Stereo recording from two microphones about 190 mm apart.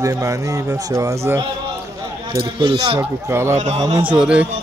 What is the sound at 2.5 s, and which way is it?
A man's voice, 20° right (ahead or behind).